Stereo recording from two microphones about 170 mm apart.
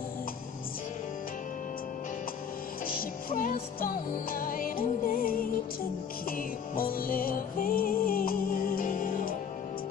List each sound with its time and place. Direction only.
3.0 s music: 55° left (ahead or behind)